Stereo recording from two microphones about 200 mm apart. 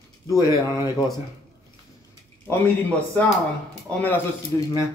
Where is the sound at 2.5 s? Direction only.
5° left (ahead or behind).